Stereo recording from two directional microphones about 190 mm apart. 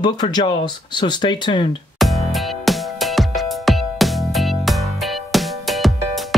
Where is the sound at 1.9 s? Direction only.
Centre (ahead or behind).